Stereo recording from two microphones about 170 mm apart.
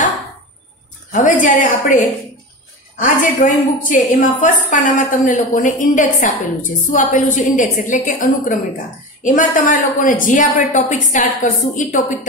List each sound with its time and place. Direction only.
1.1 s a woman's voice: 50° left (ahead or behind)